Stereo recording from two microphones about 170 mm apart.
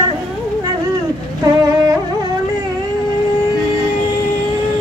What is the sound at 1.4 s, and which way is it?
Music, 20° right (ahead or behind).